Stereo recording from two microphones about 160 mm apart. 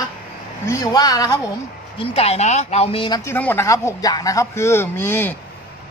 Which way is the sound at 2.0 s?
40° left (ahead or behind).